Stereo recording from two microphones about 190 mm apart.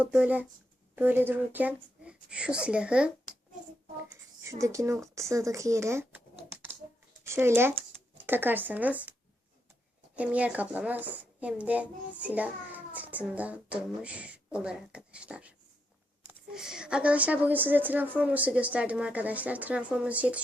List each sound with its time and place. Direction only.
0.0 s a child's voice: 5° right (ahead or behind)
4.4 s a child's voice: 15° right (ahead or behind)
7.3 s speech: 10° right (ahead or behind)
10.2 s a child's voice: 5° right (ahead or behind)